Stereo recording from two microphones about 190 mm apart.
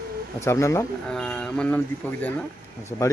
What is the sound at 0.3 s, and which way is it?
Speech, 15° left (ahead or behind).